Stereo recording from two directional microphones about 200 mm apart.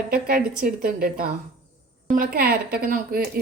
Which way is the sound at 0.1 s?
50° right (ahead or behind).